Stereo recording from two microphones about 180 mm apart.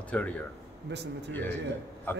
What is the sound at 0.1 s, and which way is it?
Speech, 5° left (ahead or behind).